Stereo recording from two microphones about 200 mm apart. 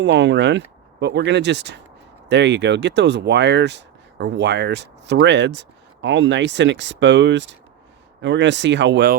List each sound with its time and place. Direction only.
0.0 s speech: 65° right (ahead or behind)